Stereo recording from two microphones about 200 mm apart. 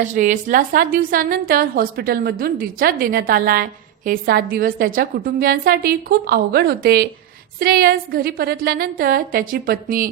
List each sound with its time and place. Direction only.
0.0 s a woman's voice: 40° right (ahead or behind)